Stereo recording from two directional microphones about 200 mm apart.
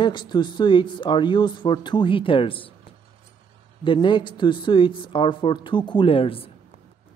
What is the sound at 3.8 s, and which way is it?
A man's voice, 25° left (ahead or behind).